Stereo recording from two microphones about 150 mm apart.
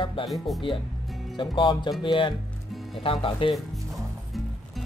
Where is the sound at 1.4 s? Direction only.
30° left (ahead or behind).